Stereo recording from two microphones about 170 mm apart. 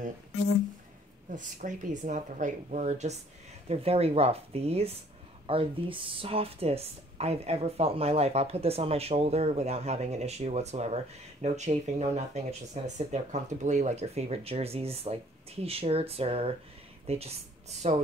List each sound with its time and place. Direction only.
1.3 s speech: 50° right (ahead or behind)